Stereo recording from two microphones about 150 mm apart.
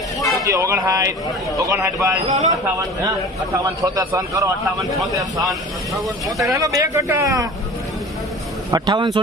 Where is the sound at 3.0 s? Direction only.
25° right (ahead or behind).